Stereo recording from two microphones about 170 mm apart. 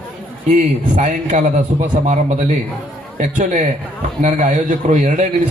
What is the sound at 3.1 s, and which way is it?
Speech, 45° right (ahead or behind).